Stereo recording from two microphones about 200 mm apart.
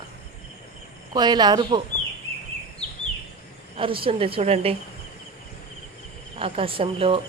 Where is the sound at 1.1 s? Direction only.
20° right (ahead or behind).